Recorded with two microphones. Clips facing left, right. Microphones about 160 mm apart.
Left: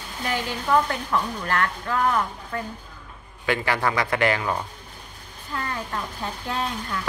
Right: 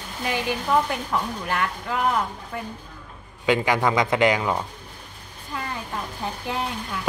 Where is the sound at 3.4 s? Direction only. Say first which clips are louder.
Right 3 dB; 15° right (ahead or behind).